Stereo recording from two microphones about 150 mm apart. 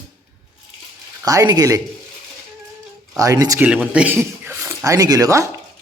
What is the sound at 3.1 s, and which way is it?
Speech, 20° right (ahead or behind).